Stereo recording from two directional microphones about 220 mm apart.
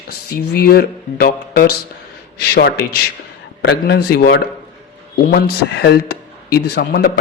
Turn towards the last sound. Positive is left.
turn(degrees=45)  # may be behind; listen again after turning